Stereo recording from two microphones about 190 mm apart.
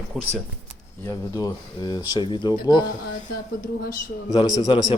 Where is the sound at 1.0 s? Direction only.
15° left (ahead or behind).